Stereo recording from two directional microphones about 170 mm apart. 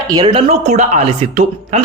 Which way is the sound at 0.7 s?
40° right (ahead or behind).